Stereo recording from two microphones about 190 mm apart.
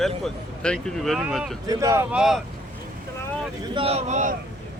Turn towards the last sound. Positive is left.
turn(degrees=-40)  # may be behind; listen again after turning